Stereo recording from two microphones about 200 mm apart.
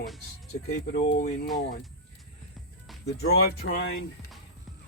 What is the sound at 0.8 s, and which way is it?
Speech, 40° left (ahead or behind).